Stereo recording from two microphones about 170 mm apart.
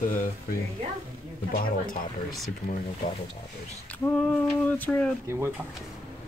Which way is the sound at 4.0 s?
5° left (ahead or behind).